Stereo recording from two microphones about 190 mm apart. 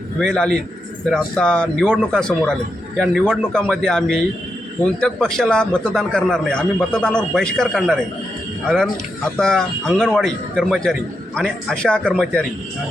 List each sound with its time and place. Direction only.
0.2 s a man's voice: 5° left (ahead or behind)